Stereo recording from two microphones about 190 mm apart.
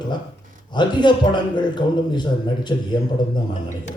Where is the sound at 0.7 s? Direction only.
25° left (ahead or behind).